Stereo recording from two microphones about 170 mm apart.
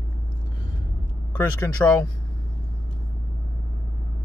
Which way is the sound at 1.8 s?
10° left (ahead or behind).